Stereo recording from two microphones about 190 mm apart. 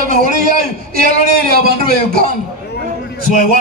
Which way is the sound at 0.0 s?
50° right (ahead or behind).